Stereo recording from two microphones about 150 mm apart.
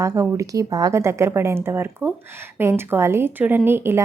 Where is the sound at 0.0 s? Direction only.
20° right (ahead or behind).